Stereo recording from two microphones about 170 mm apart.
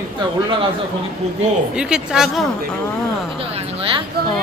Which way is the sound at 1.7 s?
5° right (ahead or behind).